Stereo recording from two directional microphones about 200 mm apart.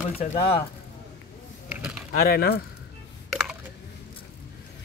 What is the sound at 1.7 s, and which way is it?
Mechanisms, 5° right (ahead or behind).